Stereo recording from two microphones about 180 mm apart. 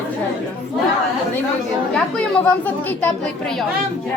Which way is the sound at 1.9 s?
5° left (ahead or behind).